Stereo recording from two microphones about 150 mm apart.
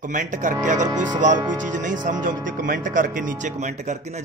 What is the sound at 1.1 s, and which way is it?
Speech, 55° right (ahead or behind).